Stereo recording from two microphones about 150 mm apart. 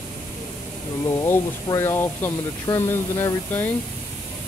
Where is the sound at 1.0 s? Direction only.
20° left (ahead or behind).